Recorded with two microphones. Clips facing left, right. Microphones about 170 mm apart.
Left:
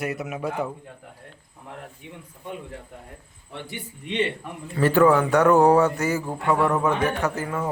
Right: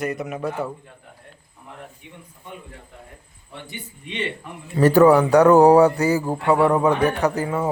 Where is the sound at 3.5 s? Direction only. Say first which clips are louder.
Left 1 dB; 90° left.